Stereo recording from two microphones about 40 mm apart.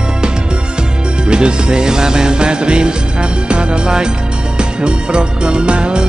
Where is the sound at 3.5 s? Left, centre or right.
Right.